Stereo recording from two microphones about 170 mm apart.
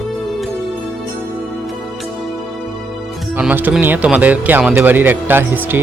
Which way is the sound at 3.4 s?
10° right (ahead or behind).